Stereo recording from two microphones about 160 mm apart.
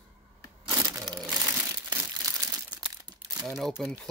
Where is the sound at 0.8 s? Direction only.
25° right (ahead or behind).